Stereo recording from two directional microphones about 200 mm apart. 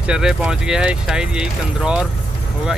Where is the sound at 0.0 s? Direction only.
5° right (ahead or behind).